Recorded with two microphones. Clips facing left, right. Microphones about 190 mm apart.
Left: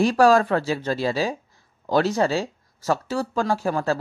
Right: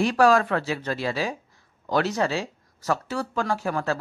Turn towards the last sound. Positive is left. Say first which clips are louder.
# left 3 dB
turn(degrees=35)  # may be behind; listen again after turning